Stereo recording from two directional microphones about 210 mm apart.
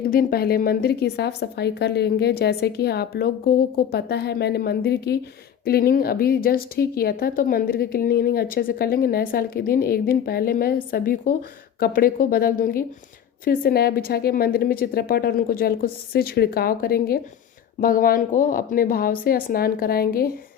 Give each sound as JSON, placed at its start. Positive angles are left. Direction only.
{"t": 0.1, "sound": "speech", "side_deg": 45}